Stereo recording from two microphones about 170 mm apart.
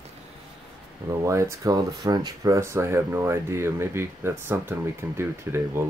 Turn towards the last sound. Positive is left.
turn(degrees=-15)  # may be behind; listen again after turning